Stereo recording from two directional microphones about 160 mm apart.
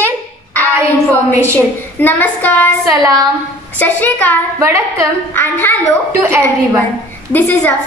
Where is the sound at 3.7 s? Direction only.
10° left (ahead or behind).